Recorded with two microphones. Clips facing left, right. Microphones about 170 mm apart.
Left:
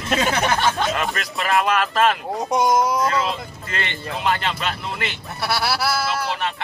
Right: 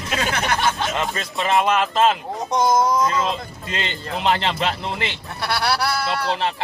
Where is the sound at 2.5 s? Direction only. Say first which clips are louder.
Right 1 dB; 10° left (ahead or behind).